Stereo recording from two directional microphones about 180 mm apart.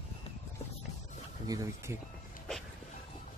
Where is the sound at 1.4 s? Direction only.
20° right (ahead or behind).